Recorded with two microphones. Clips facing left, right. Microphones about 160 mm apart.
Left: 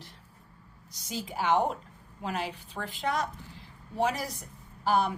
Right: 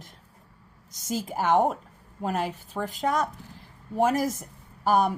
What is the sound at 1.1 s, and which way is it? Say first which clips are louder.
A woman's voice: right 4 dB; 45° right (ahead or behind).